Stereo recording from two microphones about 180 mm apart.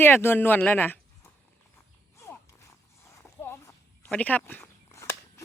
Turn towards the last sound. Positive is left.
turn(degrees=15)  # may be behind; listen again after turning